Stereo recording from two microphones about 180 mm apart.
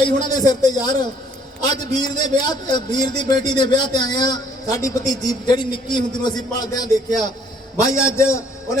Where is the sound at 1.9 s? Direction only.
25° left (ahead or behind).